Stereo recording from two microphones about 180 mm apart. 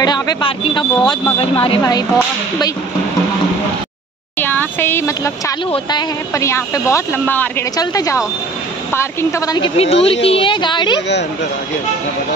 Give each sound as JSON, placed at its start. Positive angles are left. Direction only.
{"t": 0.0, "sound": "speech", "side_deg": 25}
{"t": 1.8, "sound": "speech", "side_deg": 20}
{"t": 4.4, "sound": "a sound", "side_deg": 10}
{"t": 5.7, "sound": "speech", "side_deg": 25}
{"t": 9.8, "sound": "speech", "side_deg": 35}